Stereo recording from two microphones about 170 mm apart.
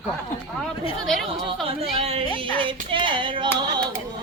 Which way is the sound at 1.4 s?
35° right (ahead or behind).